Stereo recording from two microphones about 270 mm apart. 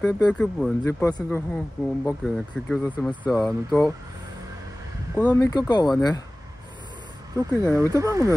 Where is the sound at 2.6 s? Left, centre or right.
Centre.